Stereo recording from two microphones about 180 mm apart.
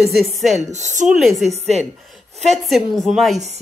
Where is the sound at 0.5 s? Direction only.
40° right (ahead or behind).